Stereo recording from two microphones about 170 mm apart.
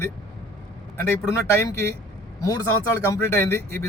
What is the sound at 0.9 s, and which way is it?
Speech, 15° left (ahead or behind).